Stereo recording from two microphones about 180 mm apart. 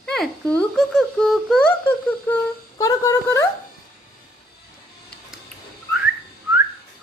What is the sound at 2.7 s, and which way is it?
Speech, 20° left (ahead or behind).